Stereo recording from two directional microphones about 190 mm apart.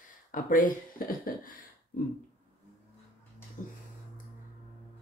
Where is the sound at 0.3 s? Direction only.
45° left (ahead or behind).